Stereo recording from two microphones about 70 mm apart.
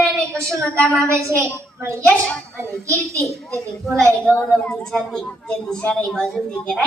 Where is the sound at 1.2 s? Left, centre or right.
Right.